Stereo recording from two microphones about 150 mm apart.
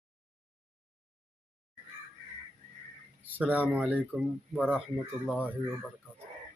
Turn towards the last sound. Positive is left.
turn(degrees=-10)  # may be behind; listen again after turning